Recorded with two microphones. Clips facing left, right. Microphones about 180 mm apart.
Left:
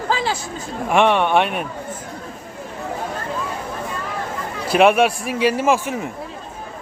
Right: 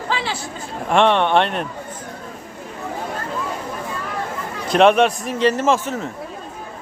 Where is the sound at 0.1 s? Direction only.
40° left (ahead or behind).